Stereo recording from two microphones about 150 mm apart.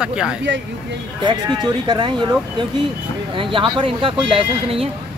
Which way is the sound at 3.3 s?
35° right (ahead or behind).